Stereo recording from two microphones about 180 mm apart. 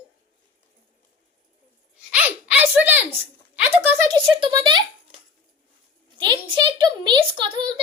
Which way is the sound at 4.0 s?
25° right (ahead or behind).